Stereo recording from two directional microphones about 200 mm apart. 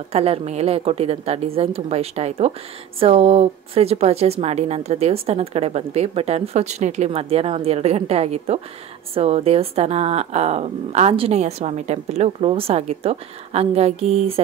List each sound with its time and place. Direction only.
0.1 s speech: 30° right (ahead or behind)